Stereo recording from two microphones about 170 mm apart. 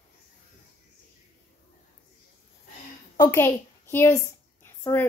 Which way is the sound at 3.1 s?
15° left (ahead or behind).